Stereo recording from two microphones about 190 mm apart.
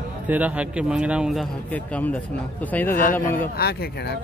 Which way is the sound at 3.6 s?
55° left (ahead or behind).